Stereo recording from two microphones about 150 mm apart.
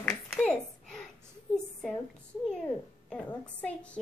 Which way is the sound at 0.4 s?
5° left (ahead or behind).